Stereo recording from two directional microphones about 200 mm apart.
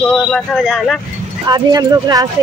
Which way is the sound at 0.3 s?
Centre (ahead or behind).